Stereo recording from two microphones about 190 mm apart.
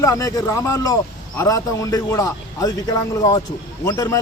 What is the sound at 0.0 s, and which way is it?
A man's voice, 15° left (ahead or behind).